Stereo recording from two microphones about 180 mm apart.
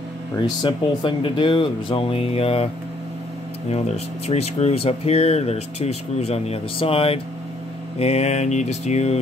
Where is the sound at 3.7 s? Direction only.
35° left (ahead or behind).